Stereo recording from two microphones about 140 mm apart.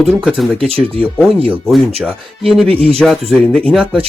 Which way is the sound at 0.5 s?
40° right (ahead or behind).